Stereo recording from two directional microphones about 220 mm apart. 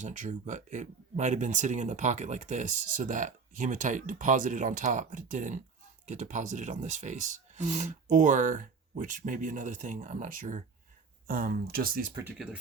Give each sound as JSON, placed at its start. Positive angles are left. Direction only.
{"t": 0.0, "sound": "speech", "side_deg": -35}